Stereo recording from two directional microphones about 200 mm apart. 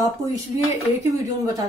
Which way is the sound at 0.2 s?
15° right (ahead or behind).